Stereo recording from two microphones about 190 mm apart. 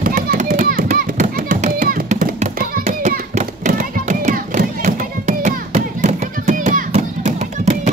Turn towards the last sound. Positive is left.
turn(degrees=-40)  # may be behind; listen again after turning